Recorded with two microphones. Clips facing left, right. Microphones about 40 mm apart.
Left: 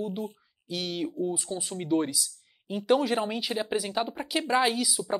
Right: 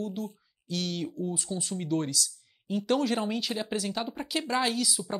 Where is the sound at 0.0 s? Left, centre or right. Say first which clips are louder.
Left 2 dB; centre.